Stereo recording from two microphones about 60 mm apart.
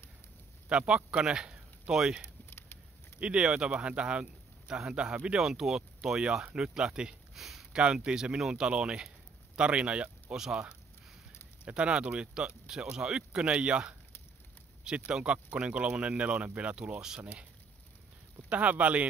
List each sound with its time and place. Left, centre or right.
0.7 s a man's voice: centre
7.3 s a sound: centre
7.7 s a man's voice: centre
10.3 s a man's voice: centre
11.6 s a man's voice: centre
18.5 s speech: right